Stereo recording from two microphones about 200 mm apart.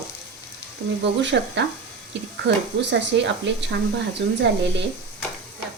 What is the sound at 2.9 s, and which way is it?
A woman's voice, 60° right (ahead or behind).